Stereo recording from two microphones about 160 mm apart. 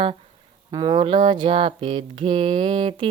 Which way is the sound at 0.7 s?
25° right (ahead or behind).